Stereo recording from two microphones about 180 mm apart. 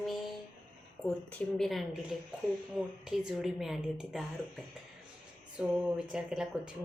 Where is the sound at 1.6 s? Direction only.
Centre (ahead or behind).